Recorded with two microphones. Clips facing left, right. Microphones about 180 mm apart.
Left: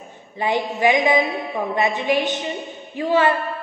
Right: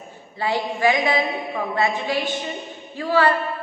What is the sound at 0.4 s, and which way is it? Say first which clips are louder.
A woman's voice: left 2 dB; 20° left (ahead or behind).